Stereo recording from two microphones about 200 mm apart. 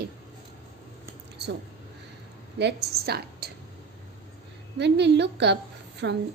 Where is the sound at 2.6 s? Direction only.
50° right (ahead or behind).